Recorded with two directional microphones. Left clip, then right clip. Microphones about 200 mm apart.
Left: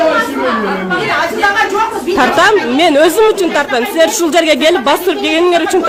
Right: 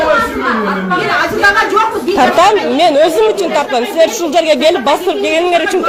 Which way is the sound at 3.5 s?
20° left (ahead or behind).